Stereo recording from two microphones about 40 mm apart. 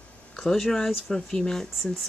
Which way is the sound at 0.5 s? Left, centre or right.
Centre.